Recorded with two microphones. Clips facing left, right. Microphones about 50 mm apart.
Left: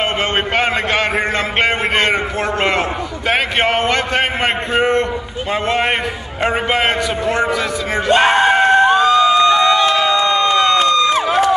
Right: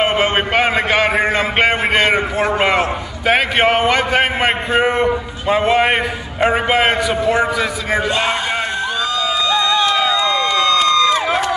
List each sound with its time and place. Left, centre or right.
0.0 s a man's voice: centre
8.1 s crowd: left